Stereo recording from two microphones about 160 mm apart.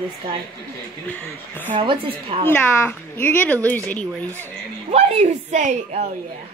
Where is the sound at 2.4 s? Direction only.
15° left (ahead or behind).